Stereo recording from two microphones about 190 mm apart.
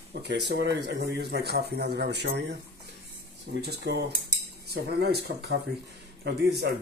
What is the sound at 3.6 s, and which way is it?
Speech, 60° right (ahead or behind).